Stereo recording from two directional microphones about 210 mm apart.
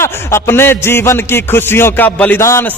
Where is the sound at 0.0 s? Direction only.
10° left (ahead or behind).